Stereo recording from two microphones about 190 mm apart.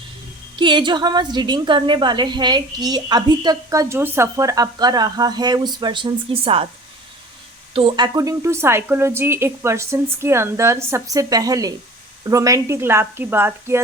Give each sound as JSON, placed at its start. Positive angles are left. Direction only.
{"t": 0.6, "sound": "a woman's voice", "side_deg": -25}
{"t": 7.7, "sound": "a woman's voice", "side_deg": -30}